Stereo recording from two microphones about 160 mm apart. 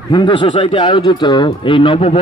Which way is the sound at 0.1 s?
30° left (ahead or behind).